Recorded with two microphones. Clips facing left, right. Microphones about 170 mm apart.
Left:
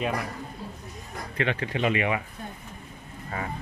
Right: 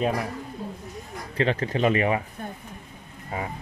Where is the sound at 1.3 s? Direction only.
35° right (ahead or behind).